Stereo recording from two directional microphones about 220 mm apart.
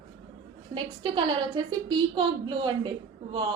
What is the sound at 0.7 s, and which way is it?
A woman's voice, 20° right (ahead or behind).